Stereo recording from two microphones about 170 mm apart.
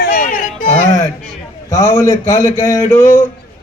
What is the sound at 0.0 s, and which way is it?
Music, 55° left (ahead or behind).